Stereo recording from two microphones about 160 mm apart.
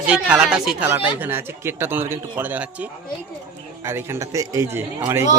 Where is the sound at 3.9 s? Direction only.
15° right (ahead or behind).